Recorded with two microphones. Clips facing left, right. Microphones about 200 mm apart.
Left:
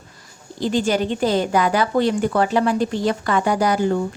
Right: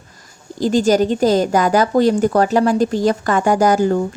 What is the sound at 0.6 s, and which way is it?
A woman's voice, 40° right (ahead or behind).